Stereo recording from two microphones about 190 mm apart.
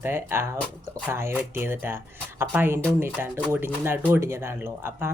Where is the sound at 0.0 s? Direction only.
10° right (ahead or behind).